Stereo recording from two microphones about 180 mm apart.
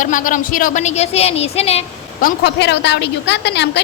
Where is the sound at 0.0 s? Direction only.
45° left (ahead or behind).